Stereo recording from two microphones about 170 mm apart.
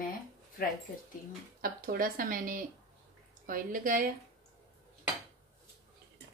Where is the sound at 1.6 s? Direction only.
60° right (ahead or behind).